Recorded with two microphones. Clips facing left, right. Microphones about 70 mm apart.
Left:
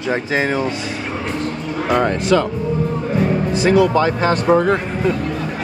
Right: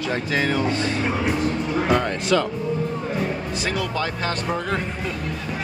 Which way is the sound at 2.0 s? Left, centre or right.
Left.